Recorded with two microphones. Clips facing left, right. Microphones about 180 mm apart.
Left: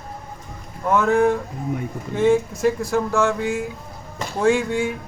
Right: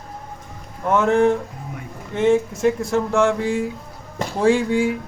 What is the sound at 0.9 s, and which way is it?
Speech, 25° right (ahead or behind).